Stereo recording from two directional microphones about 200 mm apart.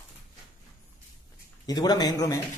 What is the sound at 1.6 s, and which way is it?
Speech, 20° left (ahead or behind).